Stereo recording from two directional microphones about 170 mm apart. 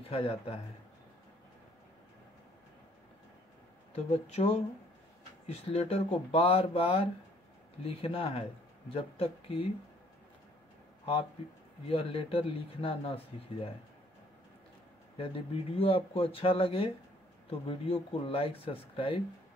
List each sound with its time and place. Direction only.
0.0 s speech: 35° left (ahead or behind)
3.9 s speech: 40° left (ahead or behind)
11.9 s speech: 35° left (ahead or behind)
15.1 s speech: 35° left (ahead or behind)